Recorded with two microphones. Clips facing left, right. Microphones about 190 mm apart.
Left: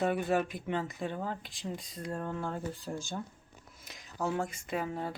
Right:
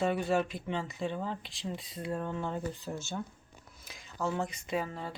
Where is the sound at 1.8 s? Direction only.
45° left (ahead or behind).